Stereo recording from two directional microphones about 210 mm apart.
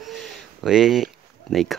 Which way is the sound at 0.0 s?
Centre (ahead or behind).